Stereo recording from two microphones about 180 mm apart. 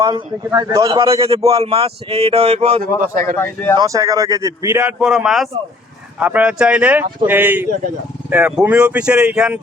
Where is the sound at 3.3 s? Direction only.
15° left (ahead or behind).